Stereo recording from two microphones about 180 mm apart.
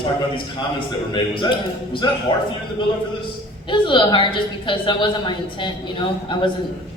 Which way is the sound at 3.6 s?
25° left (ahead or behind).